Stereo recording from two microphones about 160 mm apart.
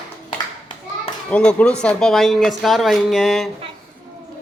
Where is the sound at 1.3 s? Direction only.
10° left (ahead or behind).